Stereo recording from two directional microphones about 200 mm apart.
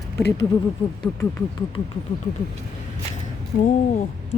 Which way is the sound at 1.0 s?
20° left (ahead or behind).